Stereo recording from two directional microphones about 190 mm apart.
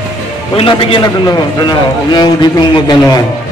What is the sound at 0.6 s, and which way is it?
A man's voice, 25° left (ahead or behind).